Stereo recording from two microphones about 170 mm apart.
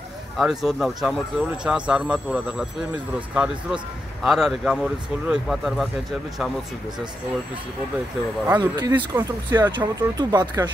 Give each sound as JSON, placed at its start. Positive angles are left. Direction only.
{"t": 0.4, "sound": "speech", "side_deg": 0}
{"t": 8.5, "sound": "speech", "side_deg": -20}